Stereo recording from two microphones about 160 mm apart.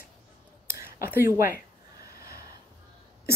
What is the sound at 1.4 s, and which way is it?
Speech, 60° left (ahead or behind).